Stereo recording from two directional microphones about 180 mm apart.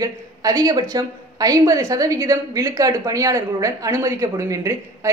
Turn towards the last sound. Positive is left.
turn(degrees=-15)  # may be behind; listen again after turning